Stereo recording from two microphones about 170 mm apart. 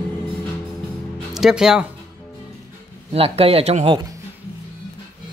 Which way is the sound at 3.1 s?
35° right (ahead or behind).